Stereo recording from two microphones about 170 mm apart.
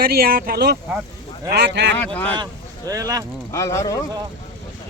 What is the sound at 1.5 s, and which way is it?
Speech, 85° right.